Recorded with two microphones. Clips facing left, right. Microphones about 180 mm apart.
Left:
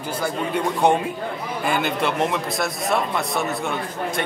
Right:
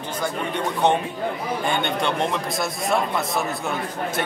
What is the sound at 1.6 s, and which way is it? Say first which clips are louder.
A man's voice: left 2 dB; 5° left (ahead or behind).